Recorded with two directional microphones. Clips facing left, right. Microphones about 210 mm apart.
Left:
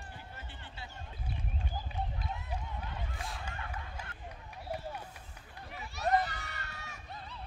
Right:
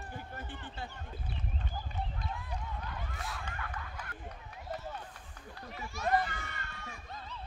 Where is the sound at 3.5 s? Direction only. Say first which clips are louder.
Right 1 dB; 25° left (ahead or behind).